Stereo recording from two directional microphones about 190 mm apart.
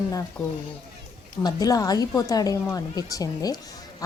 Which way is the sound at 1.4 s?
20° left (ahead or behind).